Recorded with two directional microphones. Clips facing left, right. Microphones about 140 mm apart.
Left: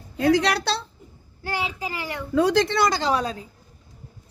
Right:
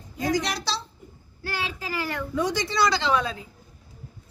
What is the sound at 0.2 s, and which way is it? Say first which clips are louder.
Speech: left 6 dB; 65° left (ahead or behind).